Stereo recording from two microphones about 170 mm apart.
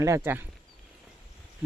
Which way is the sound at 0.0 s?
15° right (ahead or behind).